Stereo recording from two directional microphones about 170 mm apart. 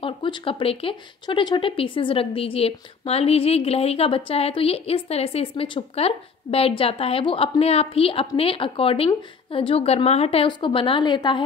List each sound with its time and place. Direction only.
0.0 s speech: 30° left (ahead or behind)